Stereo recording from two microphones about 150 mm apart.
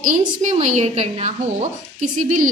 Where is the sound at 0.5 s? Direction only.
45° right (ahead or behind).